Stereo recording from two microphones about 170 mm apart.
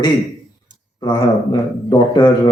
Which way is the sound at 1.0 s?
25° left (ahead or behind).